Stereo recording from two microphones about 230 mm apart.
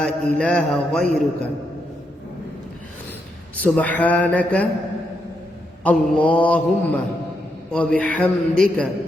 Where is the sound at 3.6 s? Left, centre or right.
Centre.